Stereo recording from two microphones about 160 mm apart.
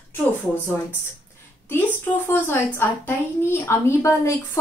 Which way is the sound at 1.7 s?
15° left (ahead or behind).